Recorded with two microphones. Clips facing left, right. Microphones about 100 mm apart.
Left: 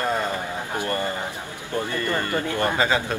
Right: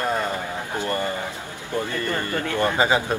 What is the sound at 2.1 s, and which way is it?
Speech, 20° left (ahead or behind).